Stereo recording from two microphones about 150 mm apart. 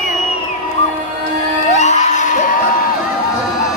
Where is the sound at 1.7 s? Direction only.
50° left (ahead or behind).